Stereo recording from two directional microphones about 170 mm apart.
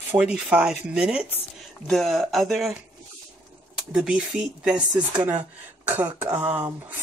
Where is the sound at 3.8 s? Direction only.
5° right (ahead or behind).